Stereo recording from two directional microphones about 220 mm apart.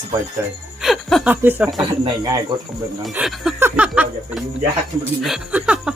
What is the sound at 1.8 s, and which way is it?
Speech, 20° right (ahead or behind).